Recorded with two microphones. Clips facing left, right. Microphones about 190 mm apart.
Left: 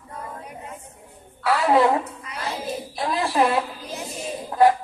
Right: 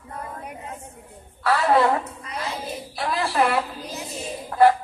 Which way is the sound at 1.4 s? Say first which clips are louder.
Left 1 dB; 15° left (ahead or behind).